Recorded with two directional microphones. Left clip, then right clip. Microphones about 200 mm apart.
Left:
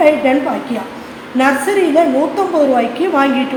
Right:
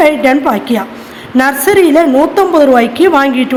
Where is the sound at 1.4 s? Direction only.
40° right (ahead or behind).